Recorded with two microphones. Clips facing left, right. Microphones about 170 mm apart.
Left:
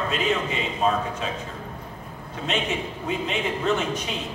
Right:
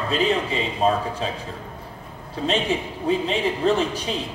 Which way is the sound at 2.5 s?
35° right (ahead or behind).